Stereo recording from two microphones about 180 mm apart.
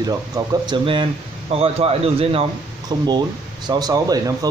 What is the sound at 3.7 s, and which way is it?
Speech, 20° right (ahead or behind).